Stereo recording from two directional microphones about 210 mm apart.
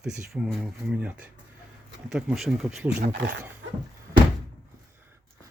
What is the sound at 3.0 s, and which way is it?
Speech, 55° right (ahead or behind).